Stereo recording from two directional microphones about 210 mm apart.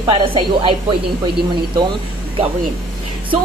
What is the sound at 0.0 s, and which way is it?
Speech, 25° right (ahead or behind).